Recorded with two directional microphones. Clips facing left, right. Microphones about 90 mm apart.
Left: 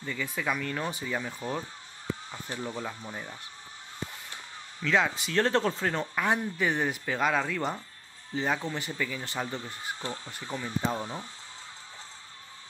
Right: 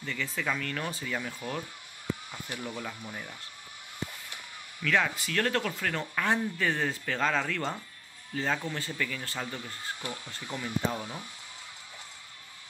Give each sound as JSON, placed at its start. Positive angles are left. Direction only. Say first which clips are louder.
{"t": 0.0, "sound": "speech", "louder": "left 1 dB", "side_deg": 15}
{"t": 1.4, "sound": "speech", "louder": "left 2 dB", "side_deg": 30}